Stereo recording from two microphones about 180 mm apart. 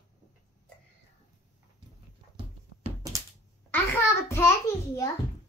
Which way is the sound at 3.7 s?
15° left (ahead or behind).